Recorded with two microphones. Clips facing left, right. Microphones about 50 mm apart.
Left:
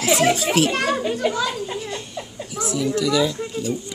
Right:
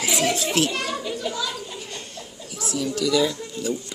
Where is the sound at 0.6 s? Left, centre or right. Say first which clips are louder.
Left 6 dB; left.